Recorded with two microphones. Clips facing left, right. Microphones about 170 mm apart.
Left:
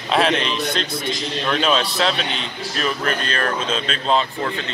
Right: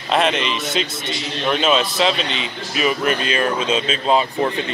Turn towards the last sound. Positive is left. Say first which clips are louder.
# right 2 dB
turn(degrees=-10)  # may be behind; listen again after turning